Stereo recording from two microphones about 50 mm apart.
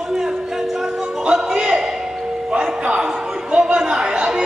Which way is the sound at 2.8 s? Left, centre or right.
Right.